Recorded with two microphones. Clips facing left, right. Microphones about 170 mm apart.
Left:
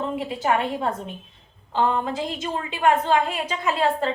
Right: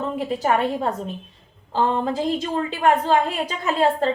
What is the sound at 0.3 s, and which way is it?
A woman's voice, 40° right (ahead or behind).